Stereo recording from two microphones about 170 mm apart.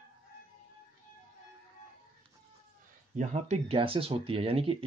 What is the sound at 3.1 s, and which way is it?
Speech, 45° right (ahead or behind).